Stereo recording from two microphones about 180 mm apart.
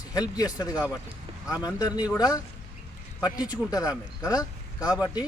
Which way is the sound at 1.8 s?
20° left (ahead or behind).